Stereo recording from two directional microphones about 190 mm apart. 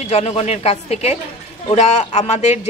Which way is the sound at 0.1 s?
35° left (ahead or behind).